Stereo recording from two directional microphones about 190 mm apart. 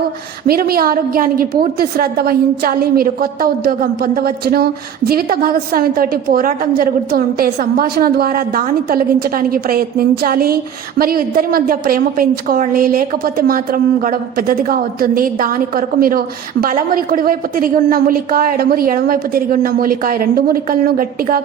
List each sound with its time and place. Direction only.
0.4 s speech: 50° right (ahead or behind)